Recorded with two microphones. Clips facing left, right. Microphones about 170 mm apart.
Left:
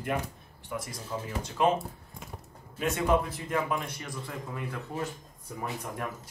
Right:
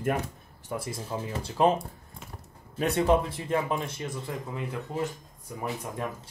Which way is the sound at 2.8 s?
30° right (ahead or behind).